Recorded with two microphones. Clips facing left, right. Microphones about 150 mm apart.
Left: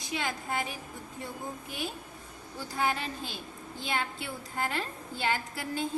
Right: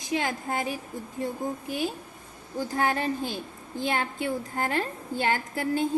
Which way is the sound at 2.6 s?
50° right (ahead or behind).